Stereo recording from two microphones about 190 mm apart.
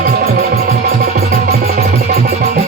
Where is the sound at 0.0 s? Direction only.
50° right (ahead or behind).